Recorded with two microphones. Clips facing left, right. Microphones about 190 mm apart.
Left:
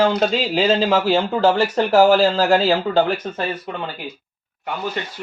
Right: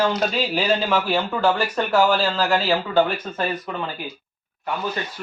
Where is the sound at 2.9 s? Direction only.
45° left (ahead or behind).